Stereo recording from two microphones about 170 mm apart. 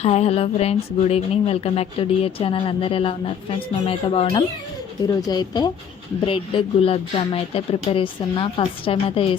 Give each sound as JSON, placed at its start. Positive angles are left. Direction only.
{"t": 0.0, "sound": "speech", "side_deg": 35}